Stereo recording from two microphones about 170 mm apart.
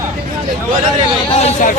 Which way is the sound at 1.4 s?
50° left (ahead or behind).